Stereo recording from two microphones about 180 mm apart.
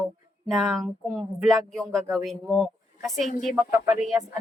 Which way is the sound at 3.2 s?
45° left (ahead or behind).